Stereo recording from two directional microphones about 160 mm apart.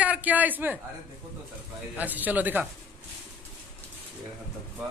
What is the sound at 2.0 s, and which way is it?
Speech, 10° right (ahead or behind).